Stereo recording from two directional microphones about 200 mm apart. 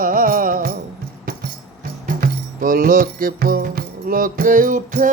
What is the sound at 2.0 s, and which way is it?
Music, 45° right (ahead or behind).